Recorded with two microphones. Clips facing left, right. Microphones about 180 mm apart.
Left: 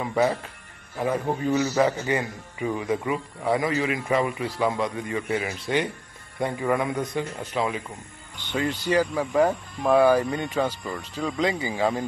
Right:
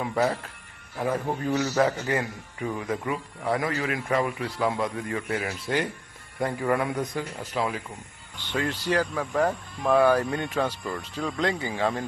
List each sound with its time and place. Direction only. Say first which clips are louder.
0.0 s a man's voice: left 2 dB; 5° left (ahead or behind)